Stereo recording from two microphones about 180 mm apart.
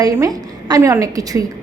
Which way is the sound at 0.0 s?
20° right (ahead or behind).